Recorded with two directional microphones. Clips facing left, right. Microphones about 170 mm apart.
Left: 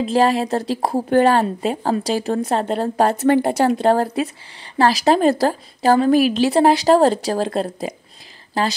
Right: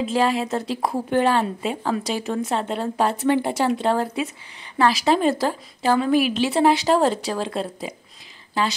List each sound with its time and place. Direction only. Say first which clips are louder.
0.0 s a woman's voice: left 4 dB; 40° left (ahead or behind)